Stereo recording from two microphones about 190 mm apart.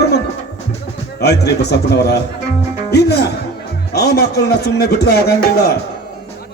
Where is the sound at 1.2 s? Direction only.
60° left (ahead or behind).